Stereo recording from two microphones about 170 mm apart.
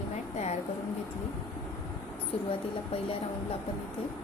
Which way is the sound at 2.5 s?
35° left (ahead or behind).